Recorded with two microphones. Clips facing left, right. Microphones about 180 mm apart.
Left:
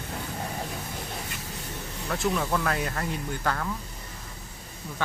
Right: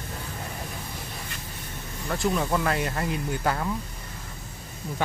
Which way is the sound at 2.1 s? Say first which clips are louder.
Right 2 dB; centre (ahead or behind).